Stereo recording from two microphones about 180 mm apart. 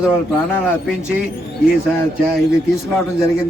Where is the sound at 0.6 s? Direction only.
5° right (ahead or behind).